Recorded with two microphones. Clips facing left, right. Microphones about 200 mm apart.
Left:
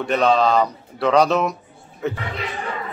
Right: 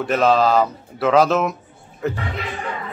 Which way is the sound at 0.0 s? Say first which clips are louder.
Right 1 dB; 5° right (ahead or behind).